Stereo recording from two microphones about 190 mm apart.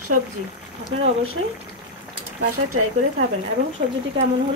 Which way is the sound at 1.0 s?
90° right.